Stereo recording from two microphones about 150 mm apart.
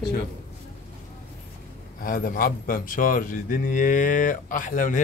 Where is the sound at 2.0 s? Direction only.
70° left (ahead or behind).